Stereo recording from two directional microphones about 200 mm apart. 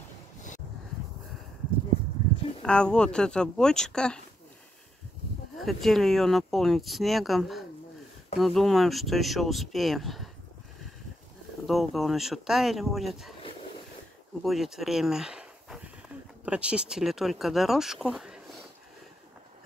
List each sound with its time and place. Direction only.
2.6 s speech: 5° left (ahead or behind)
5.6 s speech: centre (ahead or behind)
11.6 s speech: centre (ahead or behind)
14.4 s speech: centre (ahead or behind)